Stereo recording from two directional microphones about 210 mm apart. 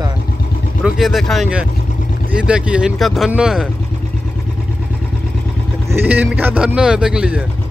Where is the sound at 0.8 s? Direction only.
Centre (ahead or behind).